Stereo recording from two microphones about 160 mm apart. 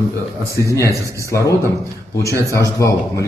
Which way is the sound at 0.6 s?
20° left (ahead or behind).